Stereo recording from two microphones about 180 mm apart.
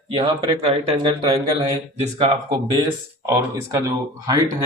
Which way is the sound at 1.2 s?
20° right (ahead or behind).